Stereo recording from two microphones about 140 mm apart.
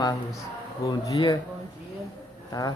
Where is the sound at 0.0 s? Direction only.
25° left (ahead or behind).